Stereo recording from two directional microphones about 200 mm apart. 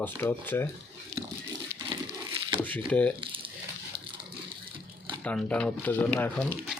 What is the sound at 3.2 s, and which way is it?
Crumpling, 25° right (ahead or behind).